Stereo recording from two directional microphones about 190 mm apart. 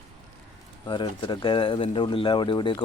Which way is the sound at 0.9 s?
25° left (ahead or behind).